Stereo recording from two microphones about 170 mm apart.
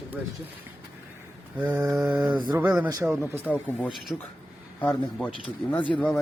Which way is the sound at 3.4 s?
10° left (ahead or behind).